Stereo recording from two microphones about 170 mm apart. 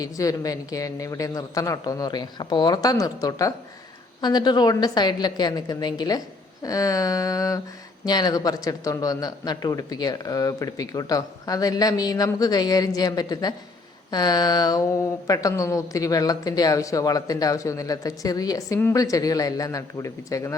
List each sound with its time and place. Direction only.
0.0 s speech: 20° left (ahead or behind)